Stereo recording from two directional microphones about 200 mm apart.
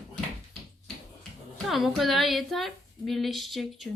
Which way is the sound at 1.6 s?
Centre (ahead or behind).